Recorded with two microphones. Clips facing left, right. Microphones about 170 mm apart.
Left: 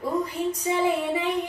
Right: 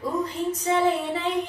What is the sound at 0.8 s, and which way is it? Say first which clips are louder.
Child singing: even; 10° left (ahead or behind).